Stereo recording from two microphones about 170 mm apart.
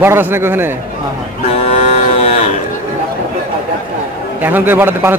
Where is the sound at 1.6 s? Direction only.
40° left (ahead or behind).